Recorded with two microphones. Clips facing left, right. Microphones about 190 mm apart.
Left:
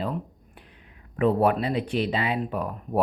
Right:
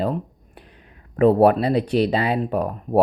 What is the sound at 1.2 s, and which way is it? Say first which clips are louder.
Speech: right 7 dB; 35° right (ahead or behind).